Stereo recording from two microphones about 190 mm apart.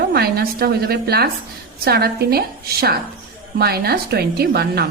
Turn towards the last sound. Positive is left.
turn(degrees=-55)  # may be behind; listen again after turning